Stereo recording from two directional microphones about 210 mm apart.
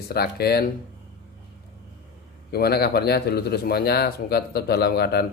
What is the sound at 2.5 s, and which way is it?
A man's voice, 50° left (ahead or behind).